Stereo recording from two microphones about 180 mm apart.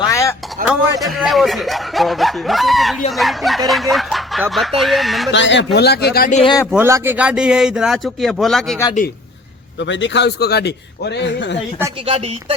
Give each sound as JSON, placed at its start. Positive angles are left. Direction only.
{"t": 0.1, "sound": "a sound", "side_deg": 15}
{"t": 0.7, "sound": "speech", "side_deg": 0}
{"t": 3.7, "sound": "a sound", "side_deg": 0}
{"t": 4.8, "sound": "speech", "side_deg": 0}
{"t": 5.3, "sound": "speech", "side_deg": 85}
{"t": 5.7, "sound": "speech", "side_deg": 65}
{"t": 6.3, "sound": "a man's voice", "side_deg": 30}
{"t": 6.7, "sound": "speech", "side_deg": -10}
{"t": 9.8, "sound": "a man's voice", "side_deg": 85}
{"t": 12.0, "sound": "speech", "side_deg": -30}